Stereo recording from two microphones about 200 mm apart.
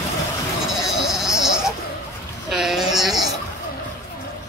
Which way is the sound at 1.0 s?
Centre (ahead or behind).